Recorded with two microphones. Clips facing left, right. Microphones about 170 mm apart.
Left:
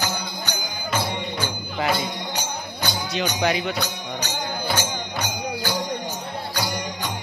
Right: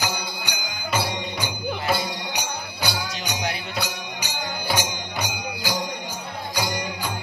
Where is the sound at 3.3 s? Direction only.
85° left.